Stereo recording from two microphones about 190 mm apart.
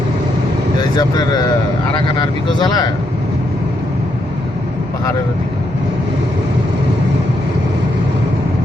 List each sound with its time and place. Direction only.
0.8 s speech: 20° left (ahead or behind)